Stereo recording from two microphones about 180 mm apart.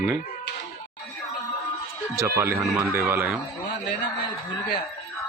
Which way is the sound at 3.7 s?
70° left (ahead or behind).